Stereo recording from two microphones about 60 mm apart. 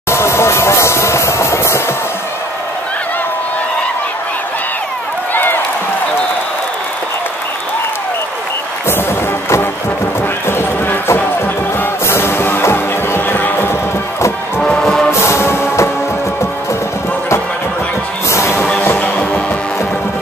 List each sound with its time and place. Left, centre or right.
0.1 s a sound: left
5.3 s run: left
10.4 s clip-clop: left
11.1 s music: left
14.6 s music: centre
15.0 s music: left
18.3 s music: left
18.8 s music: left